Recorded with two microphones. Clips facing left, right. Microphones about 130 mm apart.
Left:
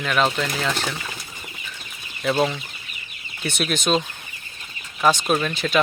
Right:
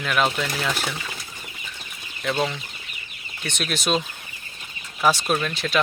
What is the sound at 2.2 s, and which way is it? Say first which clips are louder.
Speech: left 4 dB; 5° left (ahead or behind).